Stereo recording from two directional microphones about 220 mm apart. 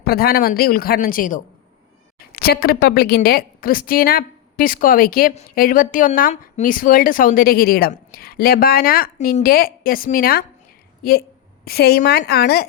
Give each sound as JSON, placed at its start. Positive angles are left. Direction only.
{"t": 0.0, "sound": "a woman's voice", "side_deg": 45}
{"t": 11.6, "sound": "speech", "side_deg": 45}